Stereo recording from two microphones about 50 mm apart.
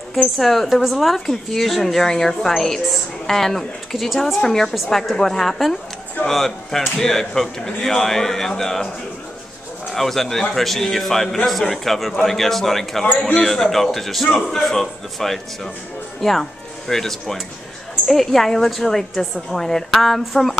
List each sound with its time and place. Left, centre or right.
0.4 s a woman's voice: centre
9.9 s a woman's voice: centre